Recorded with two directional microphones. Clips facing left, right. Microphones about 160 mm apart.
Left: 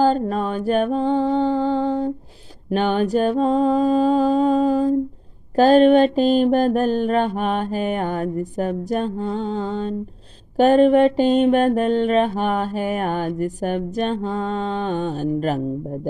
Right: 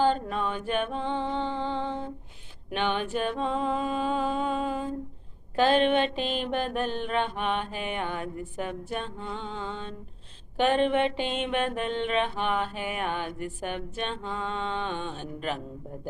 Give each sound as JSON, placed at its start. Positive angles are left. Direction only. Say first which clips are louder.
{"t": 0.0, "sound": "mantra", "louder": "left 7 dB", "side_deg": 40}